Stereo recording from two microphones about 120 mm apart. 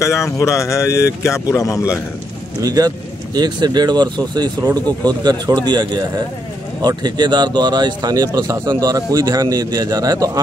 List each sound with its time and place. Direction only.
0.0 s speech: 25° left (ahead or behind)
2.6 s speech: 30° right (ahead or behind)